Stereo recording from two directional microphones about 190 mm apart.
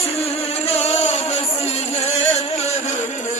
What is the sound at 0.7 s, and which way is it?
Music, 35° left (ahead or behind).